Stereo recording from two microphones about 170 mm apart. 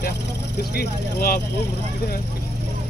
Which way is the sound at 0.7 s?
65° left (ahead or behind).